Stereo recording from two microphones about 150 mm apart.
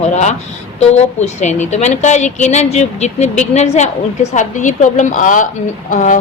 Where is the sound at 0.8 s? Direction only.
45° left (ahead or behind).